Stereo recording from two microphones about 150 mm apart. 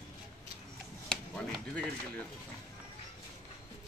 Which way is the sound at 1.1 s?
5° left (ahead or behind).